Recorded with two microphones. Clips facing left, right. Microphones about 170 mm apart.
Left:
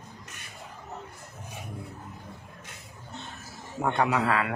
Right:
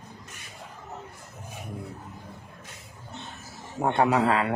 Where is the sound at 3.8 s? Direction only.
30° right (ahead or behind).